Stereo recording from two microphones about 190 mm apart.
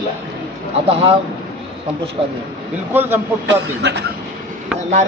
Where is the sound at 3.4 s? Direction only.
65° right (ahead or behind).